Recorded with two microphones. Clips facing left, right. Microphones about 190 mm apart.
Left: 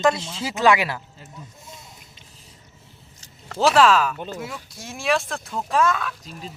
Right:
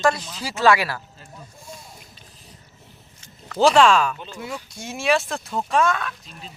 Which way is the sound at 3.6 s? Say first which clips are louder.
Right 1 dB; 5° left (ahead or behind).